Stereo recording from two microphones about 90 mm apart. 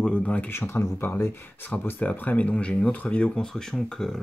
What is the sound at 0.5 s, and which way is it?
Speech, 30° left (ahead or behind).